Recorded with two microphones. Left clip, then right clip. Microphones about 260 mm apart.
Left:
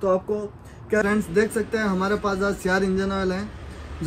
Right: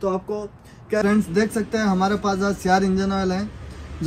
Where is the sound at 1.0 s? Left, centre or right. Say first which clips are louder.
Right 1 dB; centre.